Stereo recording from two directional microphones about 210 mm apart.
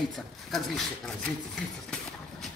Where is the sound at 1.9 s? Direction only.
Centre (ahead or behind).